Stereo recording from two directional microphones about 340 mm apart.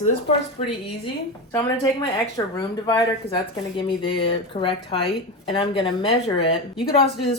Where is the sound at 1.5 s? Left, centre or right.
Centre.